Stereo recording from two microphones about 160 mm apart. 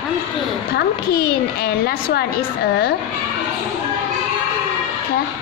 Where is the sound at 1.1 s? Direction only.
75° left (ahead or behind).